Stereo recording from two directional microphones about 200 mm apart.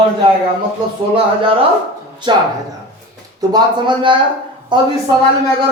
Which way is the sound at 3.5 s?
25° right (ahead or behind).